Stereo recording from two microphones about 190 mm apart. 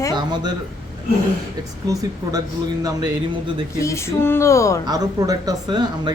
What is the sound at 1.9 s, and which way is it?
Speech, 20° right (ahead or behind).